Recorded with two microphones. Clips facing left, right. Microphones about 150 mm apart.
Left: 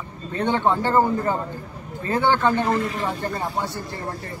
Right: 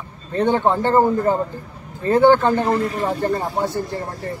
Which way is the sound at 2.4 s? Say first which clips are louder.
Right 3 dB; 35° right (ahead or behind).